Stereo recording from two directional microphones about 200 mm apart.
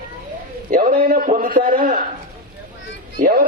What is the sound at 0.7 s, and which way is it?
A man's voice, 40° right (ahead or behind).